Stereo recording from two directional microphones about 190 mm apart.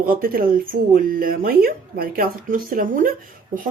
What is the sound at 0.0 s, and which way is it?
Speech, 50° right (ahead or behind).